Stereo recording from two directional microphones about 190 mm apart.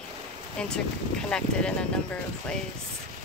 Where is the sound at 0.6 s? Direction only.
5° left (ahead or behind).